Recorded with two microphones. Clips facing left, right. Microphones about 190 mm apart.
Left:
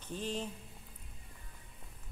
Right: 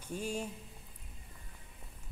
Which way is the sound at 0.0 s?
10° right (ahead or behind).